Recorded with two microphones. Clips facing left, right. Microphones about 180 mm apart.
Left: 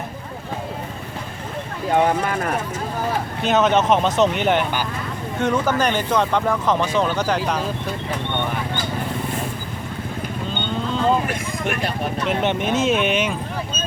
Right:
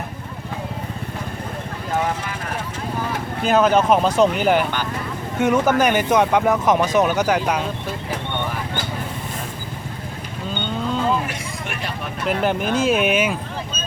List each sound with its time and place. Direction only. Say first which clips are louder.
2.2 s speech: left 7 dB; 55° left (ahead or behind)
3.4 s speech: right 2 dB; centre (ahead or behind)
12.2 s speech: right 2 dB; 5° right (ahead or behind)